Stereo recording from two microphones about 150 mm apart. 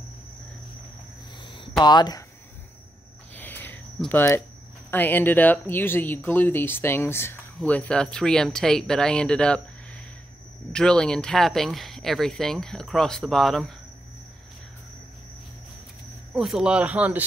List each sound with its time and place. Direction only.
1.4 s a sound: 35° left (ahead or behind)
1.8 s speech: 30° left (ahead or behind)
3.3 s a sound: 10° left (ahead or behind)
4.9 s speech: 10° left (ahead or behind)
10.7 s speech: 5° left (ahead or behind)
16.3 s speech: 5° right (ahead or behind)